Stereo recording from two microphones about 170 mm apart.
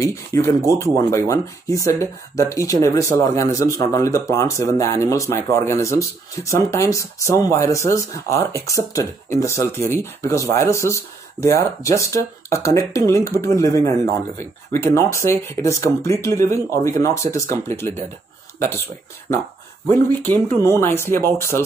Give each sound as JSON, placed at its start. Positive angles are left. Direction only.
{"t": 0.0, "sound": "speech", "side_deg": 15}
{"t": 19.9, "sound": "speech", "side_deg": 10}